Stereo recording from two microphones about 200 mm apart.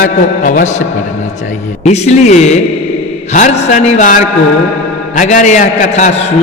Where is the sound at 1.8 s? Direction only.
35° left (ahead or behind).